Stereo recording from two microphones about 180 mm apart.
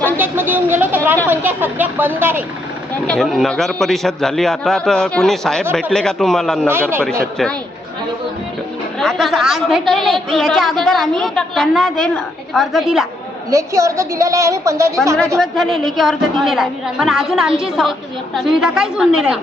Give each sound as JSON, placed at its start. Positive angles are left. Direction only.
{"t": 0.2, "sound": "a woman's voice", "side_deg": -10}
{"t": 3.1, "sound": "a woman's voice", "side_deg": 0}
{"t": 6.7, "sound": "a woman's voice", "side_deg": -10}
{"t": 9.0, "sound": "a woman's voice", "side_deg": 0}
{"t": 13.5, "sound": "a woman's voice", "side_deg": -15}
{"t": 15.4, "sound": "a woman's voice", "side_deg": 0}